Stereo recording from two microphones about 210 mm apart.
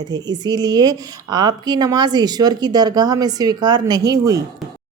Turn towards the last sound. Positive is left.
turn(degrees=-15)  # may be behind; listen again after turning